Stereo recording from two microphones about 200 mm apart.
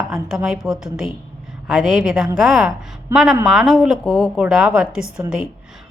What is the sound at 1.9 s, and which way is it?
Speech, 5° right (ahead or behind).